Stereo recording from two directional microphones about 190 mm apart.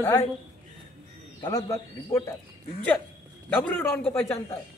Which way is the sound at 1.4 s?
20° left (ahead or behind).